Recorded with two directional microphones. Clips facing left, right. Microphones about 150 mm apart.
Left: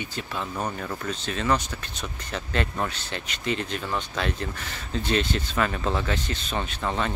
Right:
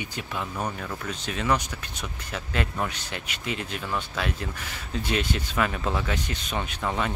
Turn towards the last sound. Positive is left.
turn(degrees=-10)  # may be behind; listen again after turning